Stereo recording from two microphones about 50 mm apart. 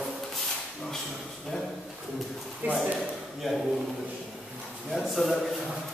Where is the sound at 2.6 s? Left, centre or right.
Right.